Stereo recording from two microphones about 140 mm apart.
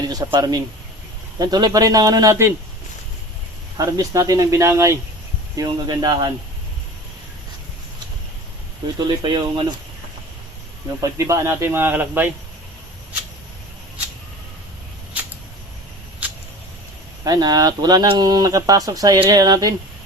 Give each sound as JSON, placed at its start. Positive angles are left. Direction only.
{"t": 0.1, "sound": "speech", "side_deg": -25}
{"t": 3.8, "sound": "speech", "side_deg": -25}
{"t": 9.0, "sound": "speech", "side_deg": -30}
{"t": 11.0, "sound": "a man's voice", "side_deg": -20}
{"t": 17.2, "sound": "speech", "side_deg": -25}